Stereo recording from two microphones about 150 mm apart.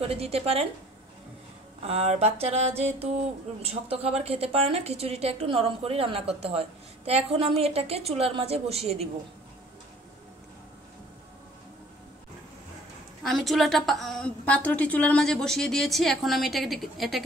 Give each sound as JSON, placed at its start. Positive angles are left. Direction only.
{"t": 0.0, "sound": "a woman's voice", "side_deg": -40}
{"t": 1.8, "sound": "mantra", "side_deg": -40}
{"t": 3.6, "sound": "a woman's voice", "side_deg": -40}
{"t": 13.2, "sound": "a woman's voice", "side_deg": 0}